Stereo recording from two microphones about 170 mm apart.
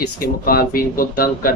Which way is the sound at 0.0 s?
60° left (ahead or behind).